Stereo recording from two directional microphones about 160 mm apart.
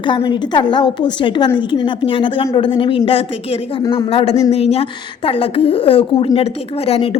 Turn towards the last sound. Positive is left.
turn(degrees=35)  # may be behind; listen again after turning